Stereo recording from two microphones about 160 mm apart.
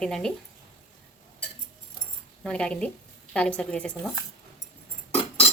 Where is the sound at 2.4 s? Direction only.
5° left (ahead or behind).